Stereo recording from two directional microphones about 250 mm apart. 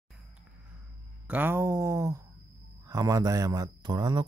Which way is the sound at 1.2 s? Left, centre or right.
Centre.